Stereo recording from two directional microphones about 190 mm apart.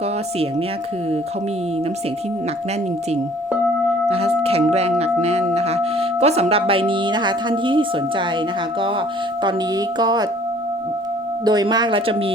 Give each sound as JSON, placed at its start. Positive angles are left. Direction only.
{"t": 4.1, "sound": "speech", "side_deg": -30}
{"t": 11.4, "sound": "speech", "side_deg": -20}